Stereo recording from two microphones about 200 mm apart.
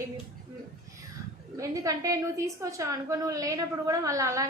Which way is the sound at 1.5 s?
15° right (ahead or behind).